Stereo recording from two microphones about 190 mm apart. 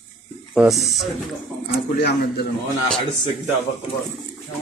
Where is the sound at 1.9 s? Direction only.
60° left (ahead or behind).